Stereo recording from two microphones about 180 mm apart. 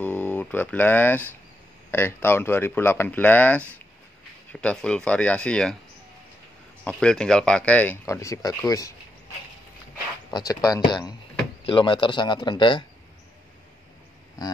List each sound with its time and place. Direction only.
0.0 s speech: 10° left (ahead or behind)
6.8 s speech: 5° left (ahead or behind)
10.3 s a man's voice: 20° left (ahead or behind)